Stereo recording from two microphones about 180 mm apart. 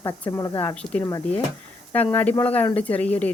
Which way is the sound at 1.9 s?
10° left (ahead or behind).